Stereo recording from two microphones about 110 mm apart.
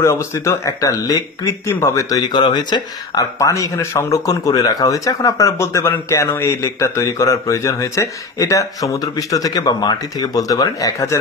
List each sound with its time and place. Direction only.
0.0 s speech: 25° left (ahead or behind)